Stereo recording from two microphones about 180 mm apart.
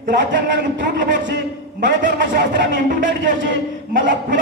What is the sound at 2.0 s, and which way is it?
A man's voice, 50° right (ahead or behind).